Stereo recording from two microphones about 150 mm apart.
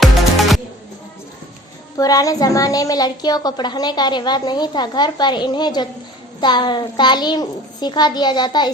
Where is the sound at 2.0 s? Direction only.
25° left (ahead or behind).